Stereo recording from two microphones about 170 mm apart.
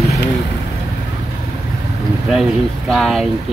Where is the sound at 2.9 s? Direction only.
Centre (ahead or behind).